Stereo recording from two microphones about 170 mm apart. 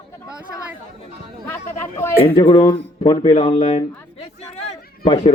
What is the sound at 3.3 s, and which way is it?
Speech, 35° left (ahead or behind).